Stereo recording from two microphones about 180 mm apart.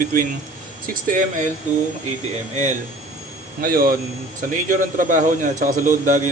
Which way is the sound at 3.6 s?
50° right (ahead or behind).